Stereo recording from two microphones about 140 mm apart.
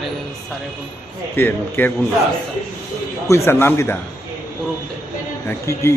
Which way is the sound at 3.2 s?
20° left (ahead or behind).